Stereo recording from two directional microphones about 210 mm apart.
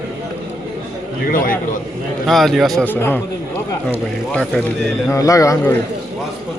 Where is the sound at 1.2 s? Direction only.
40° left (ahead or behind).